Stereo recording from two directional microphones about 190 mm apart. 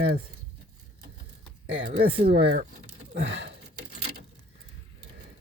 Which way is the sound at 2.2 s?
60° right (ahead or behind).